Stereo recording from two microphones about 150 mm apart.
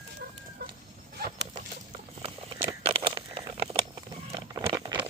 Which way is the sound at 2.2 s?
35° right (ahead or behind).